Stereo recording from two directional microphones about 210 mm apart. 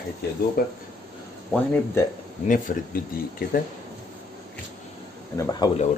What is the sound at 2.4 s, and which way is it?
Speech, 40° left (ahead or behind).